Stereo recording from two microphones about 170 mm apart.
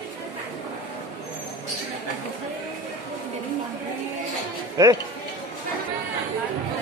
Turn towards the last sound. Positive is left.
turn(degrees=-20)  # may be behind; listen again after turning